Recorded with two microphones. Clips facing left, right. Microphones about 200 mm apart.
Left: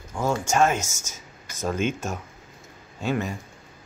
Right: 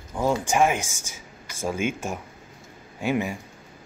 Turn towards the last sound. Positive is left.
turn(degrees=-15)  # may be behind; listen again after turning